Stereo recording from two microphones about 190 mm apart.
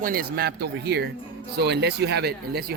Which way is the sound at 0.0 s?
50° right (ahead or behind).